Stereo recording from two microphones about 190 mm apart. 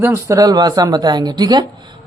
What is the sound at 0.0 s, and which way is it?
A woman's voice, 15° right (ahead or behind).